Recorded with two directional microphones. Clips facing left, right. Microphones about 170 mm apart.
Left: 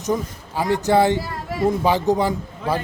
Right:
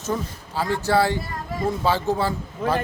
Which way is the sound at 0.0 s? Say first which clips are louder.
Left 4 dB; 15° left (ahead or behind).